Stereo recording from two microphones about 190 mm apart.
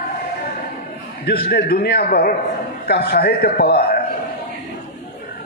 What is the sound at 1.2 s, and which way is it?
A man's voice, 55° left (ahead or behind).